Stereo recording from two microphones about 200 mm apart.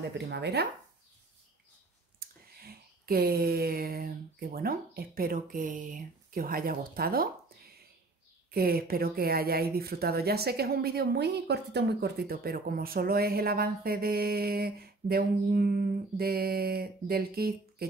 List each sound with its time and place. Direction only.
0.3 s speech: 55° right (ahead or behind)
2.1 s a sound: 50° right (ahead or behind)
8.5 s speech: 50° right (ahead or behind)